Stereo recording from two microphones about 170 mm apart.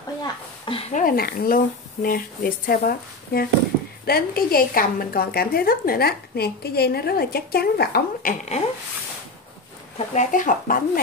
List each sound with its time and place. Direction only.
0.2 s a woman's voice: 30° left (ahead or behind)
0.9 s a woman's voice: 55° left (ahead or behind)
9.9 s speech: 50° left (ahead or behind)